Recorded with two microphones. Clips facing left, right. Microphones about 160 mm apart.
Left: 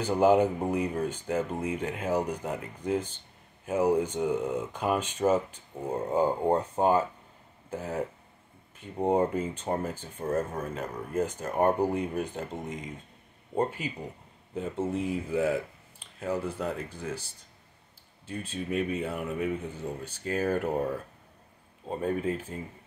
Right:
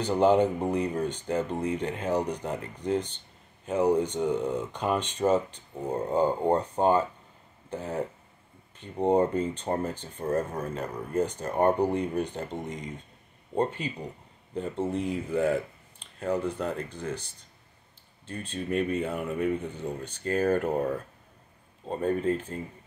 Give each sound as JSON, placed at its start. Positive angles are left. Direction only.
{"t": 0.0, "sound": "speech", "side_deg": 5}
{"t": 21.8, "sound": "speech", "side_deg": 5}